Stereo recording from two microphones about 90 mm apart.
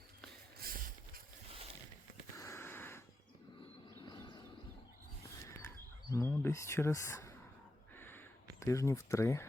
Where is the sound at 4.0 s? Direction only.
55° left (ahead or behind).